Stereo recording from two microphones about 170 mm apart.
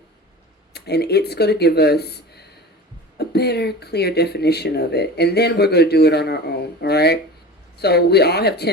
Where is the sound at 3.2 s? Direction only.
70° left (ahead or behind).